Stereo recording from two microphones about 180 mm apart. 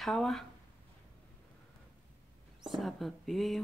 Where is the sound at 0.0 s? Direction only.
Centre (ahead or behind).